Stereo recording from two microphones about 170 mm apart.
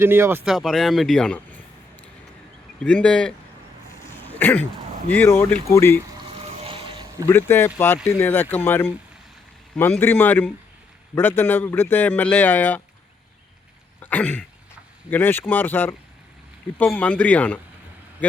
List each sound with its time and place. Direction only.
0.0 s speech: 15° right (ahead or behind)
0.4 s speech: centre (ahead or behind)
2.8 s speech: 5° left (ahead or behind)
4.1 s a sound: 10° left (ahead or behind)
5.1 s a man's voice: 10° left (ahead or behind)
6.7 s a sound: 30° right (ahead or behind)
7.3 s a man's voice: 15° left (ahead or behind)
14.0 s throat clearing: 10° left (ahead or behind)
15.1 s a man's voice: 10° left (ahead or behind)